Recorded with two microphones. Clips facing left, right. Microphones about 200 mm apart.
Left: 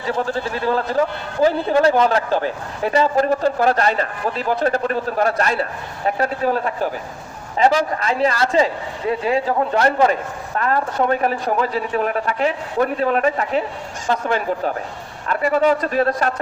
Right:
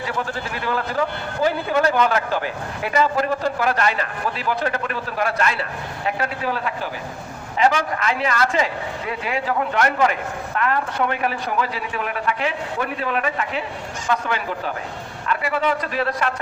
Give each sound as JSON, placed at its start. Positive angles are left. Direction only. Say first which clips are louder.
{"t": 0.1, "sound": "speech", "louder": "left 10 dB", "side_deg": 40}